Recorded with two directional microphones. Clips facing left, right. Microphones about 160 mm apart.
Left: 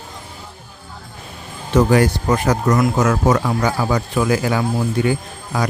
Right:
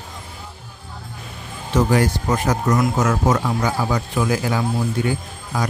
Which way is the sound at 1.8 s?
65° left (ahead or behind).